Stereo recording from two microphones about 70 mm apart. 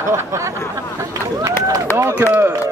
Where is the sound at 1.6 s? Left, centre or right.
Right.